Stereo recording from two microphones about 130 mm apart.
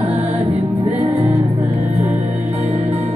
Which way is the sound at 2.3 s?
65° right (ahead or behind).